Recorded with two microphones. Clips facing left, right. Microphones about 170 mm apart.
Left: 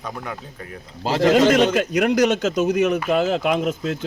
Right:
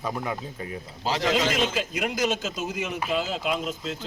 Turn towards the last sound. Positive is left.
turn(degrees=60)  # may be behind; listen again after turning